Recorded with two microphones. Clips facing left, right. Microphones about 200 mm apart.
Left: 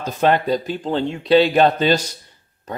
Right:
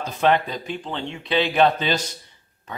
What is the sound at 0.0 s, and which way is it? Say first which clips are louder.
Speech: left 2 dB; 45° left (ahead or behind).